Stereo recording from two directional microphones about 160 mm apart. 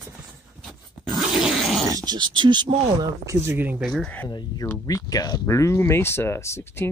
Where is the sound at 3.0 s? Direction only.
15° right (ahead or behind).